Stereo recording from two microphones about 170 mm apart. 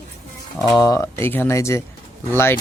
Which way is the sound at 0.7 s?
20° left (ahead or behind).